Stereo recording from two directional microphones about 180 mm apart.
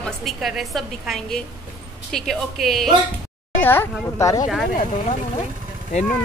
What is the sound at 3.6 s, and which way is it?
Speech, 15° left (ahead or behind).